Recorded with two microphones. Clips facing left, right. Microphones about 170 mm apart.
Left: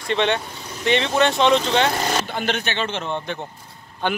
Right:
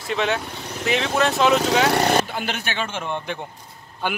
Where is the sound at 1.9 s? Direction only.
65° right (ahead or behind).